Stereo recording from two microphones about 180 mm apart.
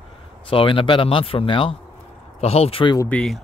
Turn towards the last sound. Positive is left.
turn(degrees=5)  # may be behind; listen again after turning